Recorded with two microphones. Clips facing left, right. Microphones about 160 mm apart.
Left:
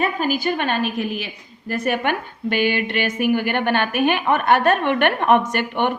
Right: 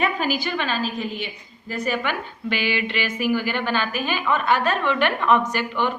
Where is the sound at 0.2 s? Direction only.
50° left (ahead or behind).